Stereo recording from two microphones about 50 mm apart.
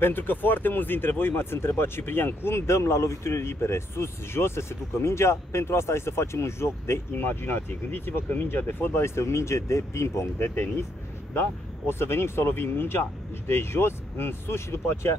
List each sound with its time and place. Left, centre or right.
0.0 s speech: left
7.2 s speech: left
11.3 s speech: left